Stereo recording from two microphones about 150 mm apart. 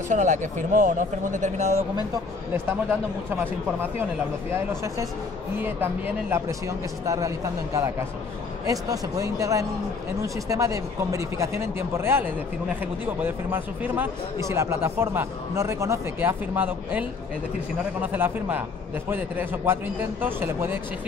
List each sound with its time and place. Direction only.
0.1 s speech: 55° right (ahead or behind)
5.6 s a man's voice: 15° right (ahead or behind)
18.0 s a man's voice: 10° right (ahead or behind)